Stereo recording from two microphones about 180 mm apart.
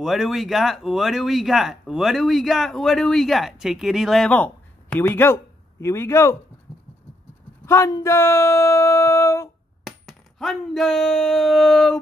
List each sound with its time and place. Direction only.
0.0 s speech: centre (ahead or behind); by 6.3 s 15° left (ahead or behind)
6.7 s scratch: 10° left (ahead or behind)
7.6 s speech: 15° left (ahead or behind)
9.8 s a sound: centre (ahead or behind)